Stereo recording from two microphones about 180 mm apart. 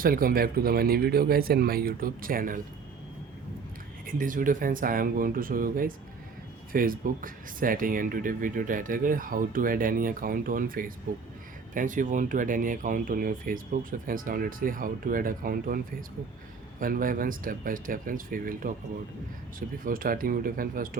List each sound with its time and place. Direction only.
0.0 s speech: 55° right (ahead or behind)
4.0 s speech: 50° right (ahead or behind)